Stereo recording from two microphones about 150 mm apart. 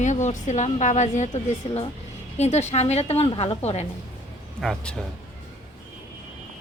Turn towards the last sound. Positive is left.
turn(degrees=0)  # may be behind; listen again after turning